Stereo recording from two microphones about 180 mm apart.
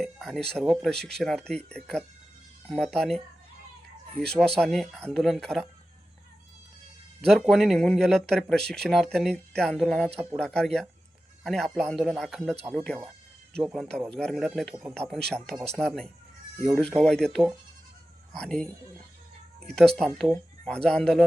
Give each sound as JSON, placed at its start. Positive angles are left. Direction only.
{"t": 0.0, "sound": "speech", "side_deg": 0}
{"t": 4.2, "sound": "speech", "side_deg": 5}
{"t": 7.2, "sound": "speech", "side_deg": 0}